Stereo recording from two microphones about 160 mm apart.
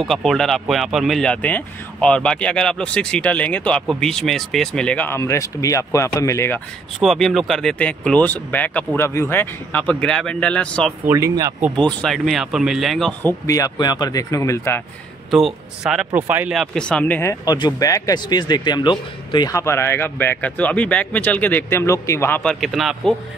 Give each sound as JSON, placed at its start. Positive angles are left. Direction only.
{"t": 0.0, "sound": "speech", "side_deg": 0}
{"t": 7.0, "sound": "speech", "side_deg": 0}
{"t": 11.1, "sound": "speech", "side_deg": -20}
{"t": 11.7, "sound": "speech", "side_deg": 5}
{"t": 13.2, "sound": "speech", "side_deg": 20}
{"t": 15.3, "sound": "speech", "side_deg": 0}
{"t": 16.7, "sound": "speech", "side_deg": 5}
{"t": 22.4, "sound": "speech", "side_deg": 0}